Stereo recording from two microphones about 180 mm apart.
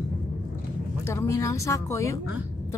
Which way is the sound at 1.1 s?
15° left (ahead or behind).